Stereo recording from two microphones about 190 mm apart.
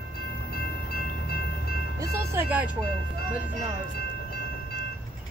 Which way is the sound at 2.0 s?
10° right (ahead or behind).